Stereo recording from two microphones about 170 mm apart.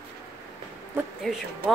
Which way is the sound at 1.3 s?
Centre (ahead or behind).